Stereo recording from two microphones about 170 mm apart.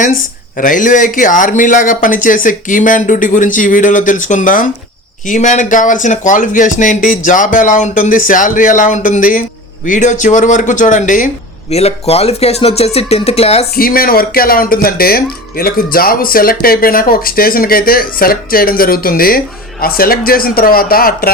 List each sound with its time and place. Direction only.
0.5 s speech: 55° left (ahead or behind)
11.7 s speech: 35° left (ahead or behind)
13.7 s speech: 60° left (ahead or behind)